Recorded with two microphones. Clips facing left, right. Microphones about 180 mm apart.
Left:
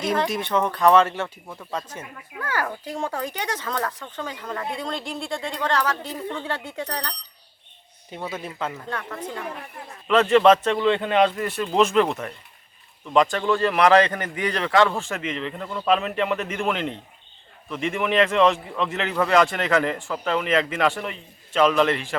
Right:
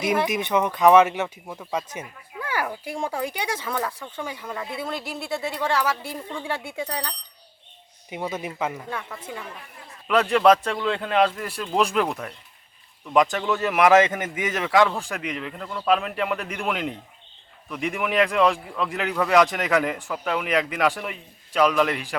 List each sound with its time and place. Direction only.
0.0 s speech: 15° right (ahead or behind)
8.1 s speech: 15° right (ahead or behind)
9.8 s a man's voice: 60° left (ahead or behind)
10.1 s a man's voice: centre (ahead or behind)
13.3 s a man's voice: 5° right (ahead or behind)